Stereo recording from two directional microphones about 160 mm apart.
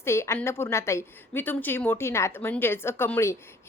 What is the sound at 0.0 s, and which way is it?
A woman's voice, 15° left (ahead or behind).